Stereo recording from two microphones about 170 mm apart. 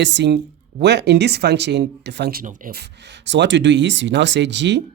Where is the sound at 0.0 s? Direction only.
90° right.